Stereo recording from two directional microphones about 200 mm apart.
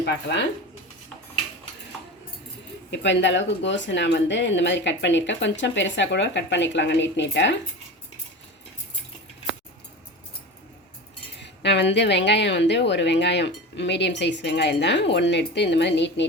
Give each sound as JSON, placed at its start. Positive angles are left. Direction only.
{"t": 0.0, "sound": "a woman's voice", "side_deg": 60}
{"t": 2.9, "sound": "a woman's voice", "side_deg": 60}
{"t": 11.3, "sound": "a woman's voice", "side_deg": 60}